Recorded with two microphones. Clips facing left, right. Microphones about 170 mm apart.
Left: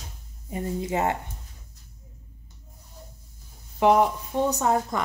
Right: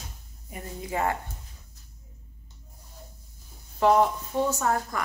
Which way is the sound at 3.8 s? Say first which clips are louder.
Left 1 dB; 15° left (ahead or behind).